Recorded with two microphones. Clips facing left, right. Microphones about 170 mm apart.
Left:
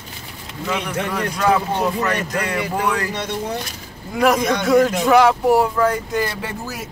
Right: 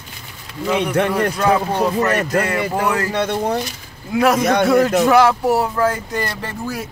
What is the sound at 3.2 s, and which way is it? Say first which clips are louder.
Speech: right 6 dB; 55° right (ahead or behind).